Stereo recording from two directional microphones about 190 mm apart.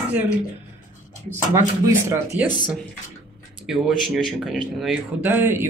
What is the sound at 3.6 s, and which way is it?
Speech, centre (ahead or behind).